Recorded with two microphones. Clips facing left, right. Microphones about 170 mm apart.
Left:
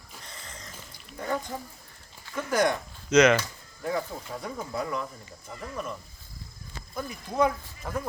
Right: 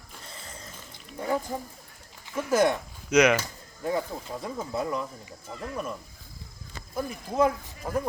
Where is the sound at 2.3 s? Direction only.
5° right (ahead or behind).